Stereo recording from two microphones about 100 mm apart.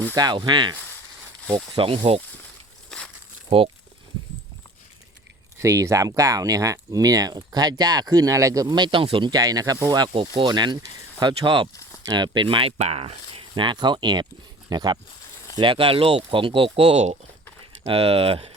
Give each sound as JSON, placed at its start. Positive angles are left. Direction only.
{"t": 0.2, "sound": "speech", "side_deg": -50}
{"t": 1.7, "sound": "speech", "side_deg": -70}
{"t": 2.9, "sound": "crumpling", "side_deg": 5}
{"t": 5.5, "sound": "speech", "side_deg": -30}
{"t": 9.3, "sound": "speech", "side_deg": -40}
{"t": 10.2, "sound": "speech", "side_deg": -55}
{"t": 11.7, "sound": "a sound", "side_deg": 30}
{"t": 12.0, "sound": "speech", "side_deg": -50}
{"t": 15.5, "sound": "speech", "side_deg": -55}